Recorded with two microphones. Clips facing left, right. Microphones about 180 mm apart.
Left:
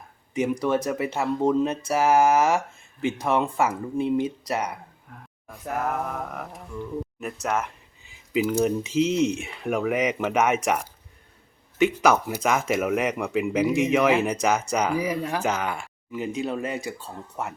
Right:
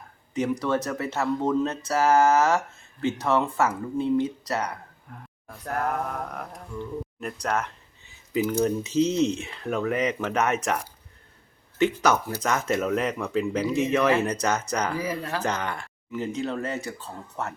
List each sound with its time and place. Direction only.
0.3 s speech: 15° left (ahead or behind)
5.1 s speech: centre (ahead or behind)
12.4 s speech: 10° left (ahead or behind)